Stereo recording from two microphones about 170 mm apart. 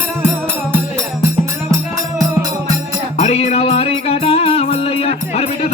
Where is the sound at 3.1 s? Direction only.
40° left (ahead or behind).